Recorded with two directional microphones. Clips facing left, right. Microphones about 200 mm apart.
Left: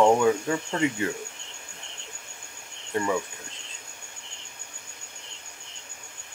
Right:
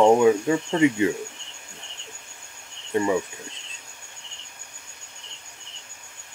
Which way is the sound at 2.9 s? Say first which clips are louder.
Right 5 dB; 20° right (ahead or behind).